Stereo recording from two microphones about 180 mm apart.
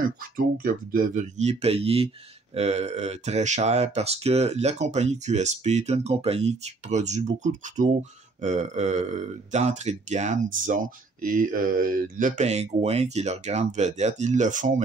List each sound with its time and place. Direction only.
0.0 s speech: 50° right (ahead or behind)